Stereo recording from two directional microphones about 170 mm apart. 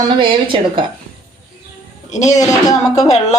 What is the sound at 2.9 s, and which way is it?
Speech, 40° left (ahead or behind).